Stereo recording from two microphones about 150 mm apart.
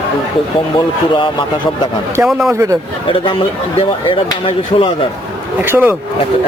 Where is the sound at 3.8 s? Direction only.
35° left (ahead or behind).